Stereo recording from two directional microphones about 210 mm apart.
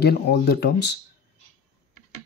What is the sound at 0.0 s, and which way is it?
Speech, 50° left (ahead or behind).